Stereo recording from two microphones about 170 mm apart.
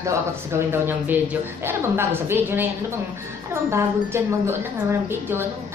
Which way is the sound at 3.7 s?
15° right (ahead or behind).